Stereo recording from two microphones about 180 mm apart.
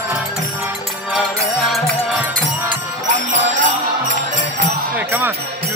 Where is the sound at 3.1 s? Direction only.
45° right (ahead or behind).